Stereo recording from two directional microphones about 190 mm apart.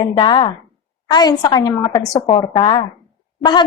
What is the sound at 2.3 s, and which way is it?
A woman's voice, 30° left (ahead or behind).